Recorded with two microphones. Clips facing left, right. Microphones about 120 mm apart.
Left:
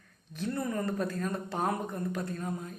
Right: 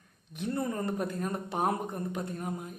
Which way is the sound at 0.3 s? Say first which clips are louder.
Even; 20° right (ahead or behind).